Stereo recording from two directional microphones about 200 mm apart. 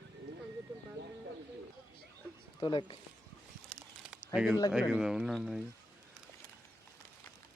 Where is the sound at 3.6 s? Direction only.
Centre (ahead or behind).